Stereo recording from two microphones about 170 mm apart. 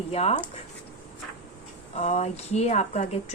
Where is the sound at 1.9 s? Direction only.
45° left (ahead or behind).